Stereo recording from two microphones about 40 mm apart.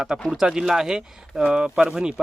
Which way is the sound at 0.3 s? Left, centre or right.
Centre.